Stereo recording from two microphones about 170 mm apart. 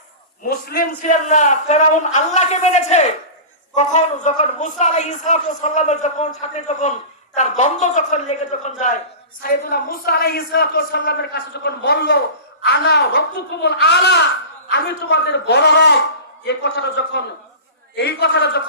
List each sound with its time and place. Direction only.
0.4 s a man's voice: 60° left (ahead or behind); by 8.7 s 45° left (ahead or behind)
9.4 s a man's voice: 60° left (ahead or behind); by 18.6 s 75° left (ahead or behind)